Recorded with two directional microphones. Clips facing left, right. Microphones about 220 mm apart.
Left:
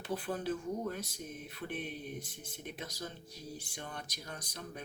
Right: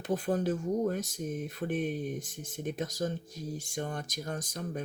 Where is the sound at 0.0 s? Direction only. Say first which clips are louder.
Right 7 dB; 45° right (ahead or behind).